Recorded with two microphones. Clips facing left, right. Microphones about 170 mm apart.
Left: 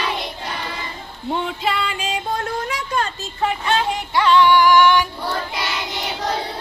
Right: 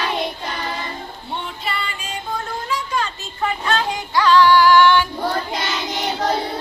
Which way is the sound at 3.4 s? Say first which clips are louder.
Left 1 dB; 25° left (ahead or behind).